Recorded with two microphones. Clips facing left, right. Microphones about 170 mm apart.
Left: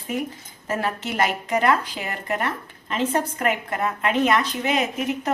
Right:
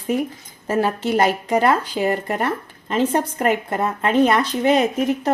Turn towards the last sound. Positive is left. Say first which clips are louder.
# right 6 dB
turn(degrees=-35)  # may be behind; listen again after turning